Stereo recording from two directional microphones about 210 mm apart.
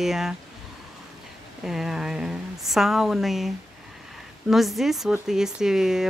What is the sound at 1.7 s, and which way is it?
Speech, centre (ahead or behind).